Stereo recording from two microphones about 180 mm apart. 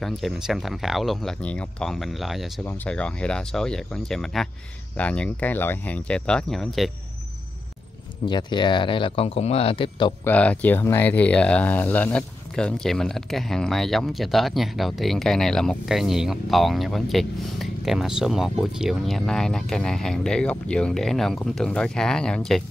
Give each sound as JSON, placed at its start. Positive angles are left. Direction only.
{"t": 0.0, "sound": "speech", "side_deg": 0}
{"t": 8.3, "sound": "speech", "side_deg": 25}
{"t": 10.2, "sound": "speech", "side_deg": 10}